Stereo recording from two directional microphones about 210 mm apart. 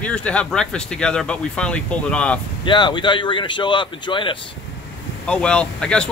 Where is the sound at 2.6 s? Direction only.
20° left (ahead or behind).